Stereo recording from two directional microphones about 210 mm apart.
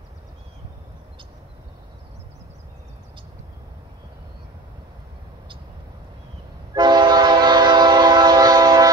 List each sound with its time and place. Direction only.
6.7 s train: 20° right (ahead or behind)